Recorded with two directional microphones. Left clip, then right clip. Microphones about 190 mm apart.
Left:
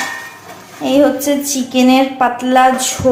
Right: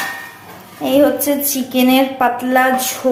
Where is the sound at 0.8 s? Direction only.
Centre (ahead or behind).